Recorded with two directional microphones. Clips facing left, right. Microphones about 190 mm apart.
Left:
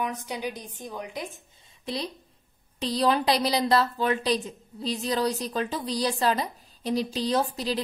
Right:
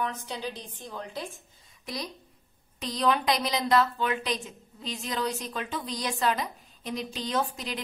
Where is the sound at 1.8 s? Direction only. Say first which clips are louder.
Left 4 dB; 30° left (ahead or behind).